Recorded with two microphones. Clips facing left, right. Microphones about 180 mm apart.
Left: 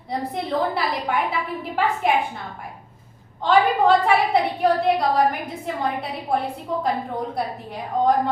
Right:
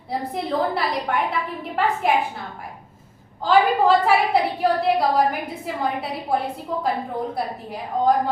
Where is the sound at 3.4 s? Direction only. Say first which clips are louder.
Even; centre (ahead or behind).